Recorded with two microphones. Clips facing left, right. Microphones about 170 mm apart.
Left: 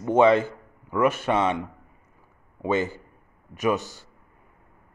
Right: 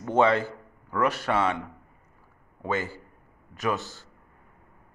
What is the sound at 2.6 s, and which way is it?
A man's voice, 20° left (ahead or behind).